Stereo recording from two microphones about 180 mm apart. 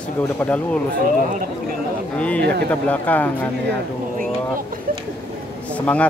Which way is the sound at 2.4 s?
65° right (ahead or behind).